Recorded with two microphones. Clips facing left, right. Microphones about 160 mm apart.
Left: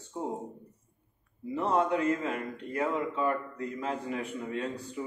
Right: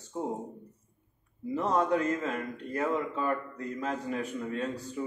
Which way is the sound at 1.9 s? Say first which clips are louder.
Even; 35° right (ahead or behind).